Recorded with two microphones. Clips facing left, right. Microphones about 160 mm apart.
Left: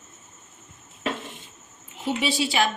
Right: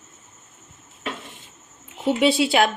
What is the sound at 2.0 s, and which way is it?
Speech, 60° right (ahead or behind).